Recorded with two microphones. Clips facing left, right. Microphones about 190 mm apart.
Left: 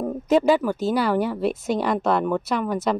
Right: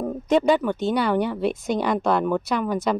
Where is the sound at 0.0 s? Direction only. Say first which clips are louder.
Left 1 dB; 5° left (ahead or behind).